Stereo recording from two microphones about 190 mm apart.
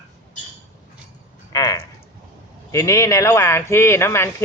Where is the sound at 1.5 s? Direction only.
20° left (ahead or behind).